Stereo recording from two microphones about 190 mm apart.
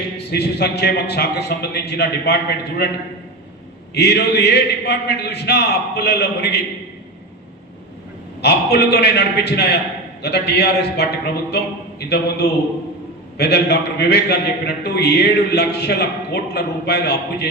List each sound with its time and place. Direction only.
0.2 s a man's voice: 60° left (ahead or behind)
3.9 s a man's voice: 60° left (ahead or behind)
8.4 s a man's voice: 60° left (ahead or behind)